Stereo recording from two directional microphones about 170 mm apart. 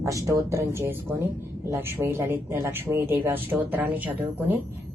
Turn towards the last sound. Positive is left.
turn(degrees=-10)  # may be behind; listen again after turning